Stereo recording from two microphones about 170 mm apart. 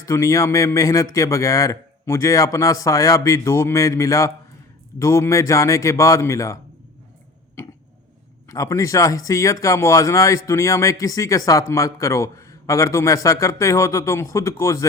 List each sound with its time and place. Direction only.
0.0 s speech: 20° left (ahead or behind)
8.4 s speech: 20° left (ahead or behind)